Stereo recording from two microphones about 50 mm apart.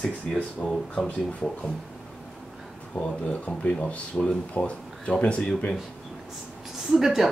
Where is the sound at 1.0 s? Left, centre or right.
Left.